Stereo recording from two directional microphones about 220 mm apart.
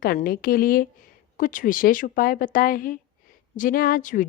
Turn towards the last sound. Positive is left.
turn(degrees=35)  # may be behind; listen again after turning